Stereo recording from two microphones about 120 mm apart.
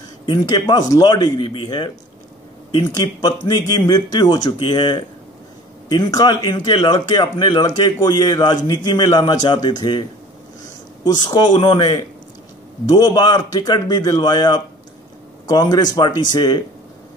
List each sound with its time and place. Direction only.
0.3 s speech: 35° left (ahead or behind)
2.9 s speech: 35° left (ahead or behind)
11.1 s speech: 40° left (ahead or behind)